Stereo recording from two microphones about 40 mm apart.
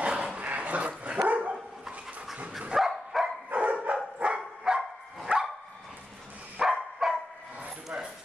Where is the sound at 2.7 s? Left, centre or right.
Centre.